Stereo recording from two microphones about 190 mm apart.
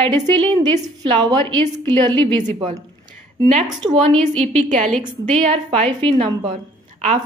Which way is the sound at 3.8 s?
20° right (ahead or behind).